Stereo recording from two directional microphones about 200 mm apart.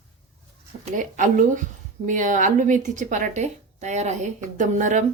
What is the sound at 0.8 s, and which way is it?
Speech, 40° right (ahead or behind).